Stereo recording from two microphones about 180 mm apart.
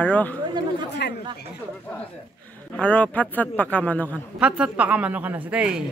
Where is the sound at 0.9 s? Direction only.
70° left (ahead or behind).